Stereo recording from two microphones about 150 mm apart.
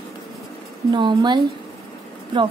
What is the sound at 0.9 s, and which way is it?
Speech, 30° right (ahead or behind).